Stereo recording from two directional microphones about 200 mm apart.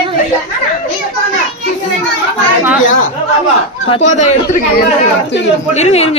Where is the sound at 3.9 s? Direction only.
35° left (ahead or behind).